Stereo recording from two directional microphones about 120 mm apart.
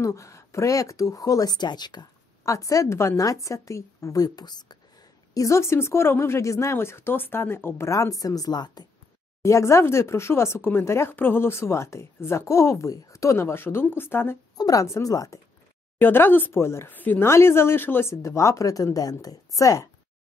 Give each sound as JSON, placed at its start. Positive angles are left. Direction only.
{"t": 0.0, "sound": "speech", "side_deg": 25}
{"t": 9.4, "sound": "speech", "side_deg": 25}
{"t": 16.0, "sound": "speech", "side_deg": 15}